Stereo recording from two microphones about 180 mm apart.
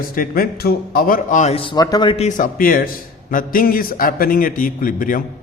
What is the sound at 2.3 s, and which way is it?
A man's voice, 45° left (ahead or behind).